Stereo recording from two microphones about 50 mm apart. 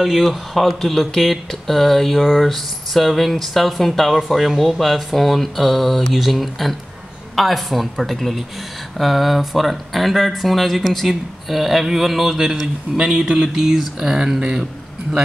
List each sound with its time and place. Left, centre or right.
0.0 s speech: centre
12.9 s speech: centre